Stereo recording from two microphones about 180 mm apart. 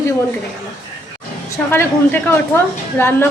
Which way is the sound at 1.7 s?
10° left (ahead or behind).